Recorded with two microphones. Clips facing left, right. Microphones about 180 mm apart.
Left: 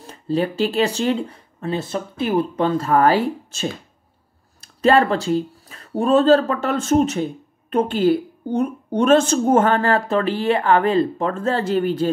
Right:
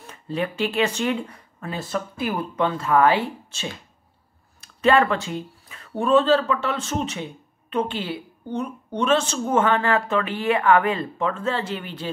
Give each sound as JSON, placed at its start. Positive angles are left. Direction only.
{"t": 0.0, "sound": "a woman's voice", "side_deg": 35}